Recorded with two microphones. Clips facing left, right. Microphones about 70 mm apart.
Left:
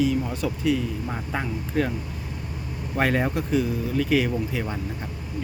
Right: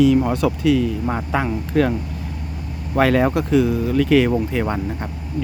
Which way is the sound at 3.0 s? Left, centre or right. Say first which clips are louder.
Right 7 dB; right.